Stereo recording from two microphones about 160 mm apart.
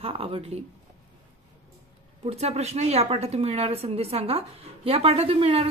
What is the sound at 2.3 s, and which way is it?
Speech, 40° right (ahead or behind).